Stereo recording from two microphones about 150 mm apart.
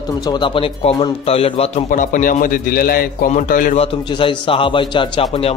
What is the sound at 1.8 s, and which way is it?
A man's voice, 60° left (ahead or behind).